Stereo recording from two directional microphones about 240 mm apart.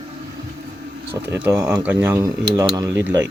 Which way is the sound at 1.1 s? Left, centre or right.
Centre.